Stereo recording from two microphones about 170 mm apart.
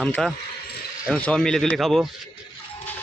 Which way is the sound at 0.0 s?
5° left (ahead or behind).